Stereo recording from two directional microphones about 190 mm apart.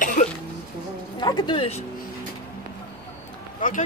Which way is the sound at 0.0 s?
45° left (ahead or behind).